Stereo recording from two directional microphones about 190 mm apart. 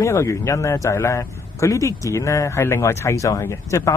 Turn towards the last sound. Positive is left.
turn(degrees=15)  # may be behind; listen again after turning